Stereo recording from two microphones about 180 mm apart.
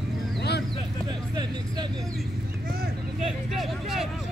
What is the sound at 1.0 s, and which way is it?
Vehicle, 20° right (ahead or behind).